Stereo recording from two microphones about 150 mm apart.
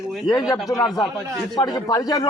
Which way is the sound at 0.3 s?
25° left (ahead or behind).